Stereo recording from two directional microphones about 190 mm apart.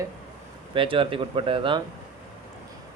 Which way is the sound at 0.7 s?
25° right (ahead or behind).